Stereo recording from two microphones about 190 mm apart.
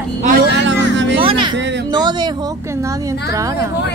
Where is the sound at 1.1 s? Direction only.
25° right (ahead or behind).